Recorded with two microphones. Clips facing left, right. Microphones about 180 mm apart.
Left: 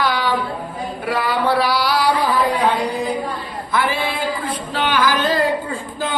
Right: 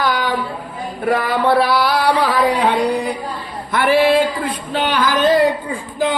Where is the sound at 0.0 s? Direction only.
45° right (ahead or behind).